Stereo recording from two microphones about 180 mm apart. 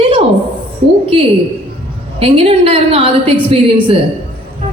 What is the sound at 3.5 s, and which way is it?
Speech, 30° right (ahead or behind).